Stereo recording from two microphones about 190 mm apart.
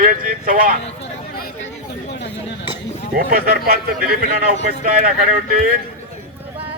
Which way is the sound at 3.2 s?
50° right (ahead or behind).